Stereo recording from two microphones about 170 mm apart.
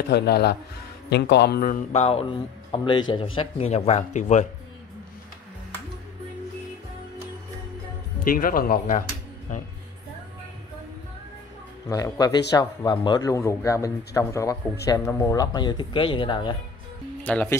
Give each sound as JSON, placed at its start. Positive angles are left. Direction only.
{"t": 0.1, "sound": "speech", "side_deg": 70}
{"t": 1.1, "sound": "a man's voice", "side_deg": 85}
{"t": 8.3, "sound": "speech", "side_deg": 55}
{"t": 11.9, "sound": "a man's voice", "side_deg": 20}
{"t": 17.2, "sound": "speech", "side_deg": 10}